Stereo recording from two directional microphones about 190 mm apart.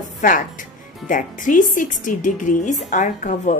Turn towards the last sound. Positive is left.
turn(degrees=40)  # may be behind; listen again after turning